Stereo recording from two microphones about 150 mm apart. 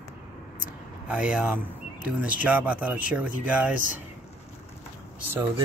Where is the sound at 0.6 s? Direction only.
10° right (ahead or behind).